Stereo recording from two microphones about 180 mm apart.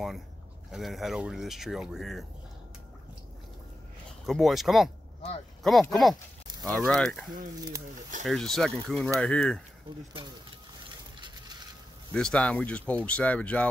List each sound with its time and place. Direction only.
0.7 s speech: centre (ahead or behind)
4.3 s speech: centre (ahead or behind)
8.3 s speech: centre (ahead or behind)
11.1 s a sound: 25° right (ahead or behind)
12.1 s speech: 5° left (ahead or behind)